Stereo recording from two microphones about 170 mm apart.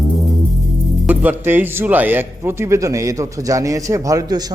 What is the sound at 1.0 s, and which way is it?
Speech, 10° right (ahead or behind).